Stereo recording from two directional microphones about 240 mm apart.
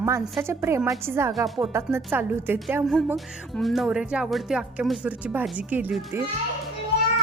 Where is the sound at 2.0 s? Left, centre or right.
Centre.